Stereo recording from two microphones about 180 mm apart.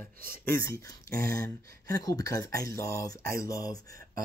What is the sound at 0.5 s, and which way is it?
Speech, 15° left (ahead or behind).